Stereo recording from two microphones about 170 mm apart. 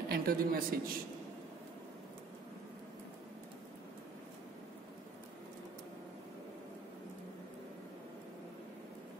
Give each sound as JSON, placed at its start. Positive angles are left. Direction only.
{"t": 0.1, "sound": "a woman's voice", "side_deg": -60}